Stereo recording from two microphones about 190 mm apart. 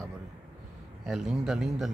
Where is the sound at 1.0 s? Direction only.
Centre (ahead or behind).